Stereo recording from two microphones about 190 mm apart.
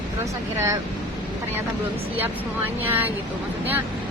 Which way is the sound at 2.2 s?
10° right (ahead or behind).